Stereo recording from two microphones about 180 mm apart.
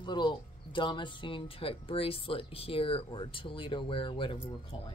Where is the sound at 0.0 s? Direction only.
25° left (ahead or behind).